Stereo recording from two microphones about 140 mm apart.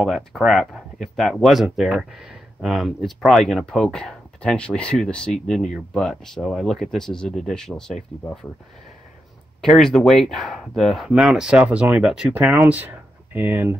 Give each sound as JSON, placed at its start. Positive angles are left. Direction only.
{"t": 0.0, "sound": "speech", "side_deg": 0}
{"t": 9.6, "sound": "speech", "side_deg": 5}